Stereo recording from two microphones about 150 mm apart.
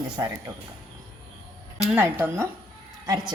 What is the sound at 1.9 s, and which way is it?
Speech, 15° right (ahead or behind).